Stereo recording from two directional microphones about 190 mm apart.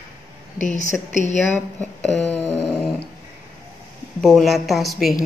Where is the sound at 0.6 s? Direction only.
40° left (ahead or behind).